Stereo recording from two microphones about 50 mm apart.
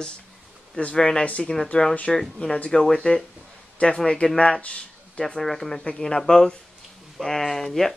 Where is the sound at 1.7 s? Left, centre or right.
Centre.